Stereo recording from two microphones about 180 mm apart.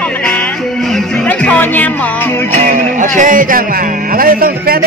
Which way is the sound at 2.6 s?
45° right (ahead or behind).